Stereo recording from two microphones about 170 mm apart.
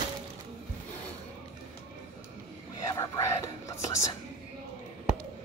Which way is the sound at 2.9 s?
20° left (ahead or behind).